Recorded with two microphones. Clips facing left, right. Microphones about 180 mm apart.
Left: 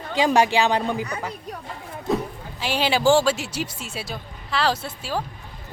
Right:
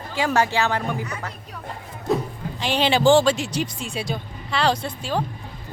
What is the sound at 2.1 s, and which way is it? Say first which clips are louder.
Music: right 1 dB; centre (ahead or behind).